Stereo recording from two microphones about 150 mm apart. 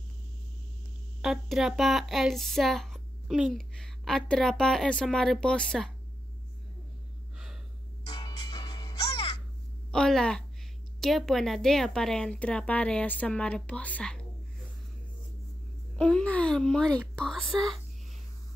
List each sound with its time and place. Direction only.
1.2 s speech: 5° right (ahead or behind)
8.1 s music: 25° left (ahead or behind)
9.1 s music: 40° left (ahead or behind)
9.8 s a woman's voice: 5° left (ahead or behind)
16.0 s speech: 5° left (ahead or behind)